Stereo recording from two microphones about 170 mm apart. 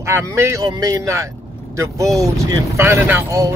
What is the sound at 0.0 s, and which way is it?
Speech, 15° right (ahead or behind).